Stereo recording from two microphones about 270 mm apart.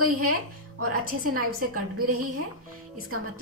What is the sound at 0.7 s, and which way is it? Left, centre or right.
A woman's voice, right.